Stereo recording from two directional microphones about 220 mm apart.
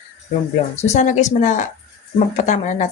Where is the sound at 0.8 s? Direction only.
30° left (ahead or behind).